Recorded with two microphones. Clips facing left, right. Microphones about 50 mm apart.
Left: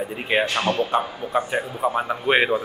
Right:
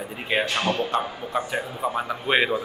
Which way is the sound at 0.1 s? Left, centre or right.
Centre.